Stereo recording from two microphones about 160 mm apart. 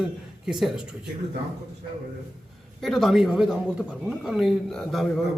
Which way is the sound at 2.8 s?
Centre (ahead or behind).